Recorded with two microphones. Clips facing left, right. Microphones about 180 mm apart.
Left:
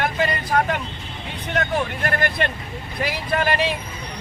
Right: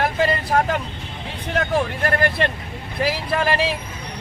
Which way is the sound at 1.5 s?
35° right (ahead or behind).